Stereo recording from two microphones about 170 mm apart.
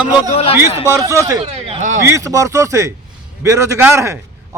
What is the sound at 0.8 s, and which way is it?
Speech, 15° right (ahead or behind).